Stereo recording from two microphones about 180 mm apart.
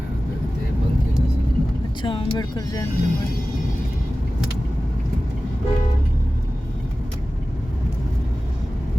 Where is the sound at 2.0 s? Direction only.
25° left (ahead or behind).